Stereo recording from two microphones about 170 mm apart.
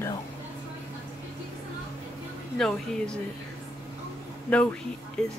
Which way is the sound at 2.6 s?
5° left (ahead or behind).